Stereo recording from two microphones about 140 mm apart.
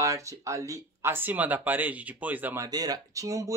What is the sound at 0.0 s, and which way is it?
Speech, 20° right (ahead or behind).